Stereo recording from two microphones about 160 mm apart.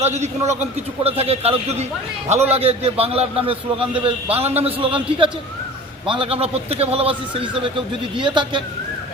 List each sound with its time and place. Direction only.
0.0 s a man's voice: 45° right (ahead or behind)